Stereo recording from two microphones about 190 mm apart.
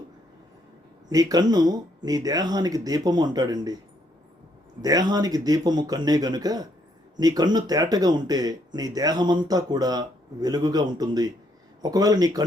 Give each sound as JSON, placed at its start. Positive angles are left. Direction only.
{"t": 1.1, "sound": "speech", "side_deg": -20}
{"t": 4.8, "sound": "speech", "side_deg": -20}